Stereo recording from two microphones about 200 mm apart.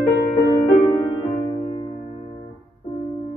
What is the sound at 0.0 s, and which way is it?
Music, 15° left (ahead or behind).